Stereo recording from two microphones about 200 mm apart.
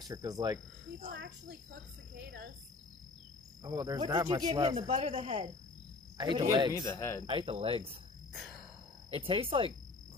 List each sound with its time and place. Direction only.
0.0 s speech: 20° right (ahead or behind)
1.1 s a child's voice: 55° right (ahead or behind)
3.6 s speech: 20° right (ahead or behind)
4.7 s speech: 30° right (ahead or behind)
6.7 s speech: 15° left (ahead or behind)
7.2 s speech: 25° right (ahead or behind)
8.3 s a sound: centre (ahead or behind)
9.1 s speech: 25° right (ahead or behind)